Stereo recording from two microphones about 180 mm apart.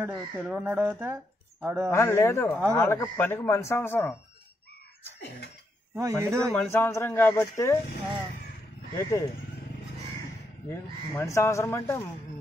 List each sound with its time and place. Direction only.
0.0 s speech: 10° right (ahead or behind)
1.9 s speech: 15° left (ahead or behind)
5.9 s speech: 15° right (ahead or behind)
6.5 s speech: 10° left (ahead or behind)
10.7 s speech: 15° left (ahead or behind)